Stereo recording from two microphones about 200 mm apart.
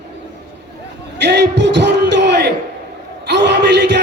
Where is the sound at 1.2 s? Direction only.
60° right (ahead or behind).